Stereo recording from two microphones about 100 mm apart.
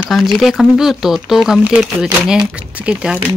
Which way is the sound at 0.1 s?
Centre (ahead or behind).